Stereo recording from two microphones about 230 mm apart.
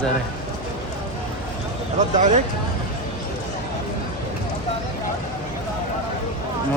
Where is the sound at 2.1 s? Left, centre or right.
Right.